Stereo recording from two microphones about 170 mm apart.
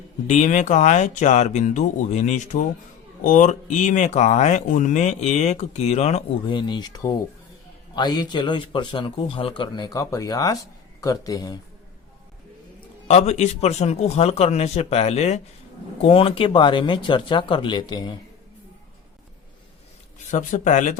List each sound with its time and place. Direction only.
0.3 s speech: 45° left (ahead or behind)
6.5 s speech: 25° left (ahead or behind)
13.1 s a man's voice: 40° left (ahead or behind)
20.3 s speech: 45° left (ahead or behind)